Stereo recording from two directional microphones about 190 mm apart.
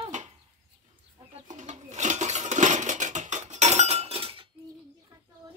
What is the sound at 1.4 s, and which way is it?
Dishes, 40° right (ahead or behind).